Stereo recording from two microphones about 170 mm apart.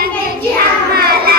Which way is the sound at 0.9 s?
65° right (ahead or behind).